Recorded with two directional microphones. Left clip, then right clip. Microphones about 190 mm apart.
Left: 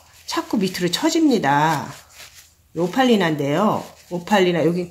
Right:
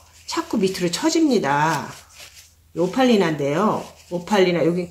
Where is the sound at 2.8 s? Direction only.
50° left (ahead or behind).